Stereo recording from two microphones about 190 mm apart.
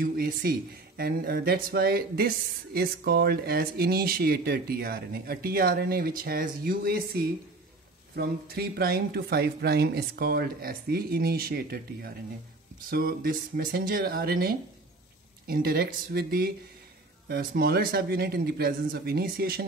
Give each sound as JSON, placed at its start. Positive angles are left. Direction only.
{"t": 0.0, "sound": "speech", "side_deg": -50}